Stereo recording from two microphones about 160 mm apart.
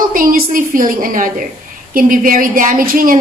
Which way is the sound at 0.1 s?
60° right (ahead or behind).